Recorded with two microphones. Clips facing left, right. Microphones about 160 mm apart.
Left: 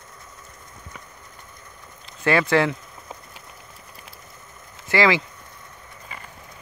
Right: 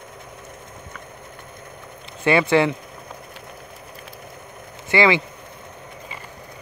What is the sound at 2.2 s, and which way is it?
Speech, 5° right (ahead or behind).